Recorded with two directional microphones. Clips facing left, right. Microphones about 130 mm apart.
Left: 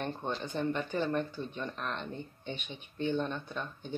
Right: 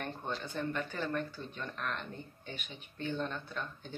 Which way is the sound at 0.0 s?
20° left (ahead or behind).